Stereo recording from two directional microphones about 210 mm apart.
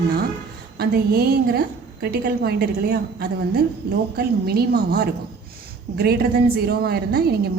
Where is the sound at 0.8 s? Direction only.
50° right (ahead or behind).